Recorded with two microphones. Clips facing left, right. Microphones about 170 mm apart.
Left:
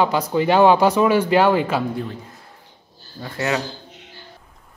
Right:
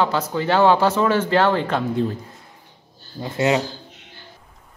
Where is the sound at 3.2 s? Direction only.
20° right (ahead or behind).